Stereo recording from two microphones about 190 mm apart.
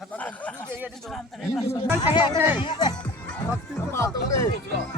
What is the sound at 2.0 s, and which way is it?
Speech, 25° left (ahead or behind).